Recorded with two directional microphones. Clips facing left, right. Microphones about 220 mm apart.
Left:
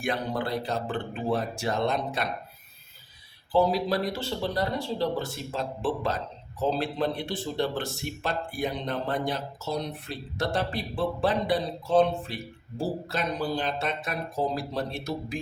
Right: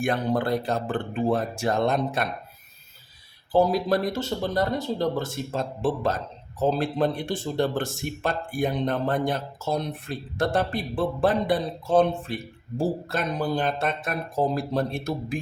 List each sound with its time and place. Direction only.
0.0 s speech: 50° right (ahead or behind)
3.5 s speech: 45° right (ahead or behind)